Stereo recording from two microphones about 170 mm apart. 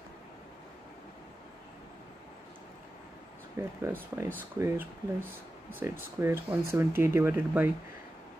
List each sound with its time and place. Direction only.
3.5 s speech: 15° right (ahead or behind)